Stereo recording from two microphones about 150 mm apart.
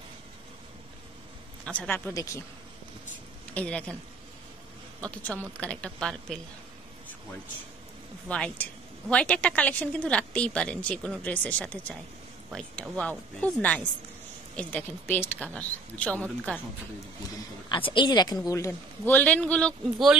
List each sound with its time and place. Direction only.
1.7 s a woman's voice: 10° left (ahead or behind)
3.5 s a woman's voice: 5° left (ahead or behind)
5.6 s a woman's voice: 10° left (ahead or behind)
8.3 s a woman's voice: 10° left (ahead or behind)
17.6 s a woman's voice: 35° left (ahead or behind); by 20.2 s centre (ahead or behind)